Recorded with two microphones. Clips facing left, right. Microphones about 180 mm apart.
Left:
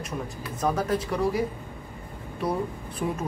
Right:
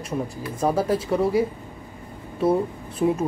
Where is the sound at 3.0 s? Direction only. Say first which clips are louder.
Right 8 dB; 25° right (ahead or behind).